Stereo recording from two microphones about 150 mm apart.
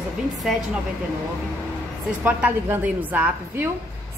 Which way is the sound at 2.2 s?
10° right (ahead or behind).